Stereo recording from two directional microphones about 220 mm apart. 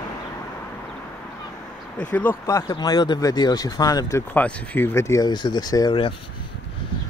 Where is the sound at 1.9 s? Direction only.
5° left (ahead or behind).